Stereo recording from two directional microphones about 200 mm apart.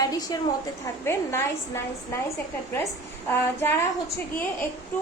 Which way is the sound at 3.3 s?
10° left (ahead or behind).